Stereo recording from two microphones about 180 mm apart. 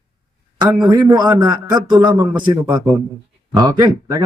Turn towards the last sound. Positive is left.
turn(degrees=-20)  # may be behind; listen again after turning